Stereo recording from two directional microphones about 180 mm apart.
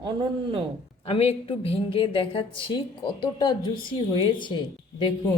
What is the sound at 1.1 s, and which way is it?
A woman's voice, 30° left (ahead or behind).